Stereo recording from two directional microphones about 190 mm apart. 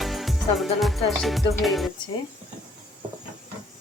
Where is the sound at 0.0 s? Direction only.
Centre (ahead or behind).